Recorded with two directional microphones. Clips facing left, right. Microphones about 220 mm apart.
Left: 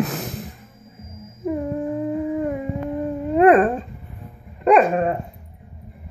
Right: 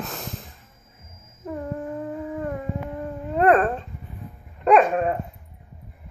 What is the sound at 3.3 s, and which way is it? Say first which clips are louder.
Dog: left 5 dB; 5° left (ahead or behind).